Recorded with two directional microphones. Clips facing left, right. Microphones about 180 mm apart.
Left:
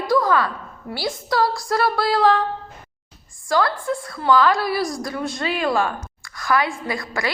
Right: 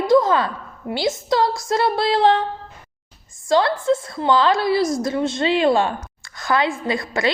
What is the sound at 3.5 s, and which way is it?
A woman's voice, 25° right (ahead or behind).